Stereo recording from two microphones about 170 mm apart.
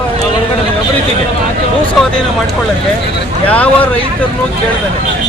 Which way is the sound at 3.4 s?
10° left (ahead or behind).